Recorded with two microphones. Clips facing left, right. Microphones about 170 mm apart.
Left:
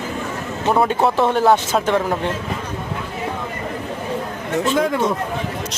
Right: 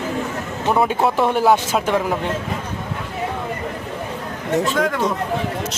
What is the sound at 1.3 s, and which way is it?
Speech, 10° right (ahead or behind).